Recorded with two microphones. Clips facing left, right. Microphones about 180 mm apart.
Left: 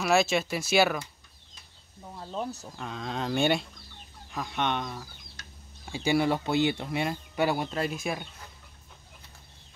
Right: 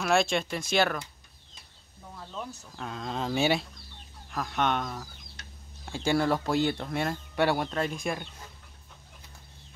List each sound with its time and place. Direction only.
0.0 s speech: 5° left (ahead or behind)
2.1 s speech: 35° left (ahead or behind)
2.7 s speech: centre (ahead or behind)